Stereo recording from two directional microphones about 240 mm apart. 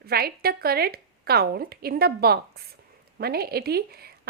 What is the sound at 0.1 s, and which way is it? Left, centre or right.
A woman's voice, right.